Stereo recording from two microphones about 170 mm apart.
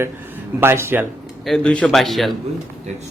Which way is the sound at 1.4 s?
5° left (ahead or behind).